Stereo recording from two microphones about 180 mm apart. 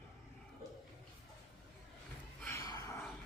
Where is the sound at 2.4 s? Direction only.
15° left (ahead or behind).